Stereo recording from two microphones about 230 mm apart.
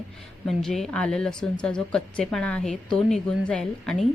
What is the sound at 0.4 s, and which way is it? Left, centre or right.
A woman's voice, centre.